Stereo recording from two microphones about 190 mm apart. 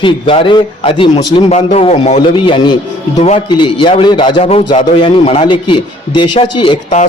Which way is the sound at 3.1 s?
35° left (ahead or behind).